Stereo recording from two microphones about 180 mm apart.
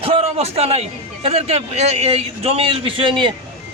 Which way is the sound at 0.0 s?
35° right (ahead or behind).